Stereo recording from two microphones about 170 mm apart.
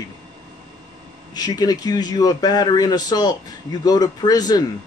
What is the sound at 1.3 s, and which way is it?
A man's voice, 20° left (ahead or behind).